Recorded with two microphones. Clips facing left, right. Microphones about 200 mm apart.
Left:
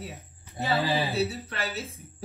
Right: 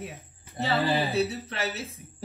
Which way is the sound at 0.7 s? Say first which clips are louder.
Right 1 dB; centre (ahead or behind).